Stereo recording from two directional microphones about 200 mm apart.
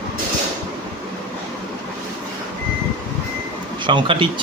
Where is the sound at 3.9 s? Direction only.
25° right (ahead or behind).